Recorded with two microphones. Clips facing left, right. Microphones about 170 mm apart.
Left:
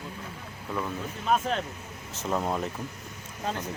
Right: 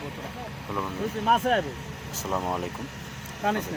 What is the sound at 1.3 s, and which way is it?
Speech, 60° right (ahead or behind).